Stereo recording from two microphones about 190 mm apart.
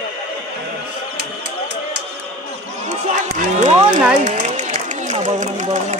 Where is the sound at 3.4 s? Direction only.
40° right (ahead or behind).